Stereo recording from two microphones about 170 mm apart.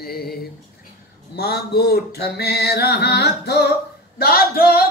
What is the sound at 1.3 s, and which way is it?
Mantra, 70° left (ahead or behind).